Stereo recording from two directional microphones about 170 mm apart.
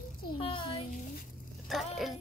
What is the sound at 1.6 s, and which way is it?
Speech, centre (ahead or behind).